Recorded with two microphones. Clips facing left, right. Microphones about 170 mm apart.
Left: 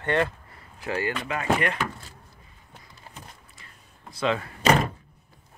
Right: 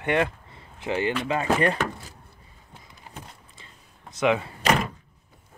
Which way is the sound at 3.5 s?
25° right (ahead or behind).